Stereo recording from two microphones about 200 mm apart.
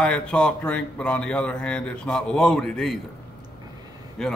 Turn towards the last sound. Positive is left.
turn(degrees=5)  # may be behind; listen again after turning